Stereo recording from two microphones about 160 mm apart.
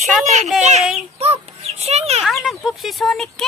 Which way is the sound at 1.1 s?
40° right (ahead or behind).